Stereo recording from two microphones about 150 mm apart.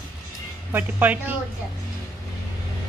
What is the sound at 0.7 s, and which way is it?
Speech, 10° right (ahead or behind).